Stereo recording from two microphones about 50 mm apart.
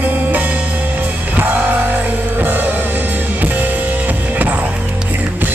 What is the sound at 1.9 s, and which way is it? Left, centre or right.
Music, right.